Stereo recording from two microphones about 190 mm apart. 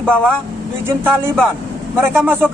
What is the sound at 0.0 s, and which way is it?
Speech, 5° left (ahead or behind).